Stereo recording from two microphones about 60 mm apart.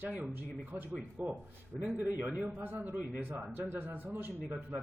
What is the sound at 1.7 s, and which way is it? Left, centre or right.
Speech, centre.